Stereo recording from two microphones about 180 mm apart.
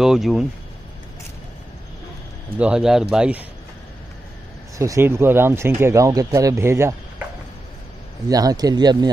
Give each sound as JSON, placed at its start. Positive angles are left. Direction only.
{"t": 0.0, "sound": "speech", "side_deg": 0}
{"t": 2.6, "sound": "speech", "side_deg": -5}
{"t": 4.7, "sound": "speech", "side_deg": -15}
{"t": 8.3, "sound": "speech", "side_deg": -20}